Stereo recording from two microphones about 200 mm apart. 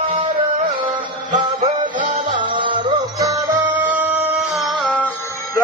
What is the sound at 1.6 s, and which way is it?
Music, 40° right (ahead or behind).